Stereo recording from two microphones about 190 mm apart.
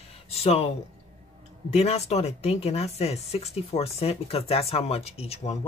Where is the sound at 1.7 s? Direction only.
35° left (ahead or behind).